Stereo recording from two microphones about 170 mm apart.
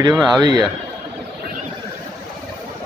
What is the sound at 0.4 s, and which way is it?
Speech, 25° right (ahead or behind).